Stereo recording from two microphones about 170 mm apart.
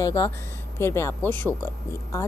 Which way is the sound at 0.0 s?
20° left (ahead or behind).